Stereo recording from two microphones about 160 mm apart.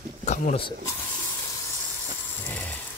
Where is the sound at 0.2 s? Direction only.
45° left (ahead or behind).